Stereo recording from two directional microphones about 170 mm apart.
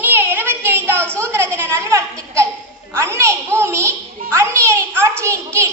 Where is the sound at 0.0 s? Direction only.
10° right (ahead or behind).